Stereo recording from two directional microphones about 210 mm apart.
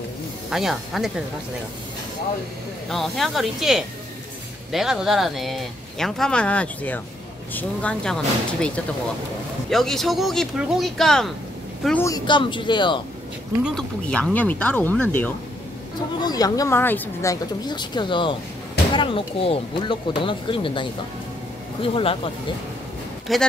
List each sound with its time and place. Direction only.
0.5 s speech: centre (ahead or behind)
2.9 s speech: centre (ahead or behind); by 13.0 s 20° left (ahead or behind)
13.7 s speech: 5° left (ahead or behind)
16.2 s speech: 20° left (ahead or behind)
23.3 s speech: centre (ahead or behind)